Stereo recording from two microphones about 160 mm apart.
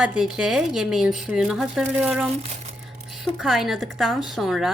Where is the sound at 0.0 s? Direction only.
5° right (ahead or behind).